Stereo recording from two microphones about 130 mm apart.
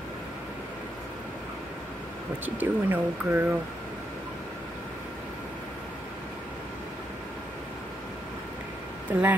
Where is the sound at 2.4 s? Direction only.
15° right (ahead or behind).